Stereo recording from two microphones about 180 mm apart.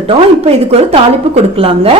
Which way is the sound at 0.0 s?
35° right (ahead or behind).